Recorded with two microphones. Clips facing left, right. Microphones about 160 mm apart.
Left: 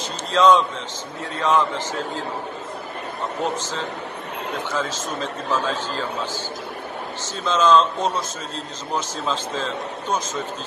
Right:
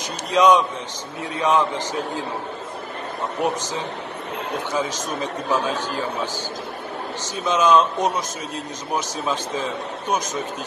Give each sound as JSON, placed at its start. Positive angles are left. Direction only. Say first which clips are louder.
{"t": 0.3, "sound": "a man's voice", "louder": "even", "side_deg": -15}
{"t": 4.7, "sound": "a man's voice", "louder": "right 2 dB", "side_deg": -15}
{"t": 7.4, "sound": "a man's voice", "louder": "even", "side_deg": -15}